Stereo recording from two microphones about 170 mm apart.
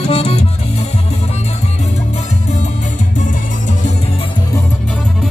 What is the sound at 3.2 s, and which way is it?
Music, 45° left (ahead or behind).